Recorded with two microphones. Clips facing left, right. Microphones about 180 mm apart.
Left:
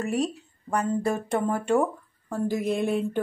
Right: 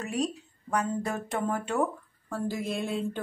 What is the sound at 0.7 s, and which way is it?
A woman's voice, 10° left (ahead or behind).